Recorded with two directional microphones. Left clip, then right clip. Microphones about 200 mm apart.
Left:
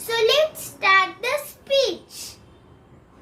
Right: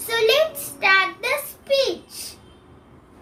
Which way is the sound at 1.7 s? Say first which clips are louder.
Even; 15° right (ahead or behind).